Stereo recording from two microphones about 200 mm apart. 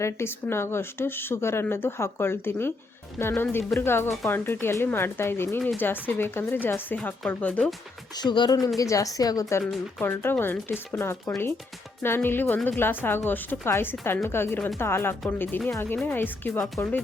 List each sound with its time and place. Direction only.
0.0 s speech: 10° left (ahead or behind)
4.1 s speech: centre (ahead or behind)
4.4 s speech: 10° left (ahead or behind)
8.2 s speech: 20° left (ahead or behind); by 17.0 s 5° left (ahead or behind)